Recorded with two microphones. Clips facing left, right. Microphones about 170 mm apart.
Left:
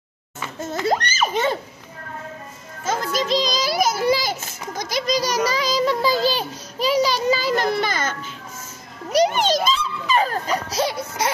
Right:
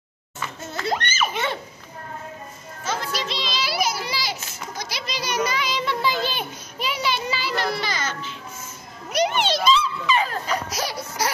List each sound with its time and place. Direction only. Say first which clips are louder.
0.8 s a child's voice: left 3 dB; 40° left (ahead or behind)
2.8 s a child's voice: left 5 dB; 45° left (ahead or behind)
9.1 s a child's voice: left 4 dB; 40° left (ahead or behind)
10.8 s music: left 4 dB; 25° left (ahead or behind)